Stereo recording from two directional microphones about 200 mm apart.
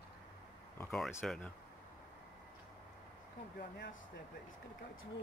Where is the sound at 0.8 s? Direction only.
5° left (ahead or behind).